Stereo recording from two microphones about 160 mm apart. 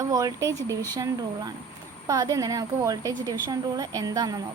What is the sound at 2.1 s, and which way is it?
A woman's voice, 20° right (ahead or behind).